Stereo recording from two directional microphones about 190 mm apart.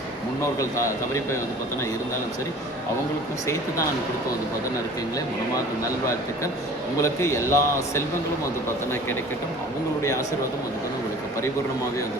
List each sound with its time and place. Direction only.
7.0 s a man's voice: 15° left (ahead or behind)
10.0 s a man's voice: 15° left (ahead or behind)